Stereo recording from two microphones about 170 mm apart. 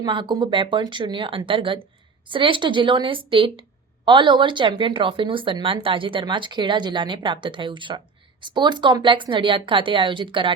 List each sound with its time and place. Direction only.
0.0 s a woman's voice: 25° right (ahead or behind)